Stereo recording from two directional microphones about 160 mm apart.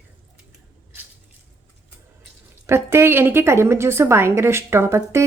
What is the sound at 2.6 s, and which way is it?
A woman's voice, 15° right (ahead or behind).